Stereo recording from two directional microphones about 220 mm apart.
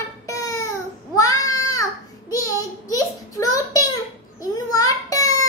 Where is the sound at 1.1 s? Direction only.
15° left (ahead or behind).